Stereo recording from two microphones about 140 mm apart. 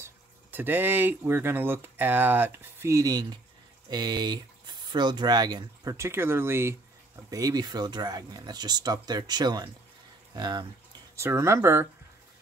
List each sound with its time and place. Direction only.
0.0 s speech: 15° right (ahead or behind); by 10.7 s 30° right (ahead or behind)
11.1 s speech: 20° right (ahead or behind)